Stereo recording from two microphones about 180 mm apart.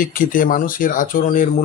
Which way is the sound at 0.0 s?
50° left (ahead or behind).